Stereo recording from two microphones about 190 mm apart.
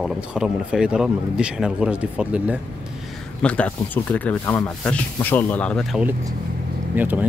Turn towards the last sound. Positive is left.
turn(degrees=-10)  # may be behind; listen again after turning